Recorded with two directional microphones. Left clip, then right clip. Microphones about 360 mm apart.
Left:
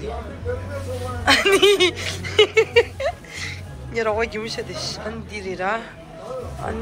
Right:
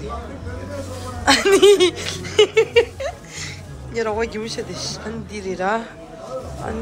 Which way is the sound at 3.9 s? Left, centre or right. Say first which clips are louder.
Even; centre.